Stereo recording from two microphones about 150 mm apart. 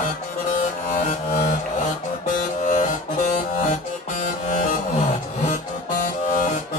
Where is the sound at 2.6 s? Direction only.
55° left (ahead or behind).